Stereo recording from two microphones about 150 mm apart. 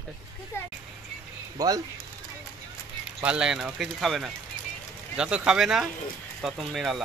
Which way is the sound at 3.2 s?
5° right (ahead or behind).